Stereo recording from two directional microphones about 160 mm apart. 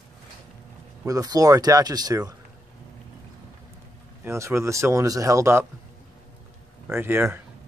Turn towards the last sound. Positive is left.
turn(degrees=-15)  # may be behind; listen again after turning